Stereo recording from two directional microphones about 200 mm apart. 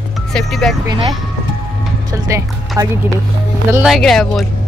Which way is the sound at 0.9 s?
20° right (ahead or behind).